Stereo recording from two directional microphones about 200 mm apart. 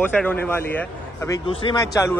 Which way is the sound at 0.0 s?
10° left (ahead or behind).